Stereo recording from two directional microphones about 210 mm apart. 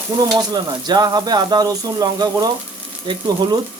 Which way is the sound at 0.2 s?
20° right (ahead or behind).